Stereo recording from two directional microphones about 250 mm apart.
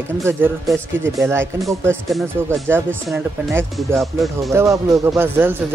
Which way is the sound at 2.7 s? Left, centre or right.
Centre.